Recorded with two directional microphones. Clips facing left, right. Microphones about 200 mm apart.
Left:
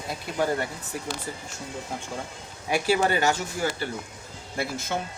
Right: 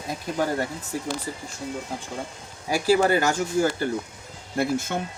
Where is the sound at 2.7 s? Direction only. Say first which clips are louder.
Right 3 dB; 35° right (ahead or behind).